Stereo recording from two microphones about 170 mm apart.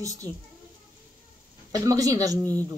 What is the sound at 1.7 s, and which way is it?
Speech, 20° right (ahead or behind).